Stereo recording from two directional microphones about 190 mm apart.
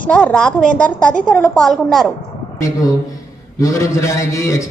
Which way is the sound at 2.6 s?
15° left (ahead or behind).